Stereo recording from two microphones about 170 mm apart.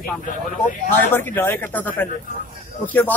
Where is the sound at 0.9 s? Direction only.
10° left (ahead or behind).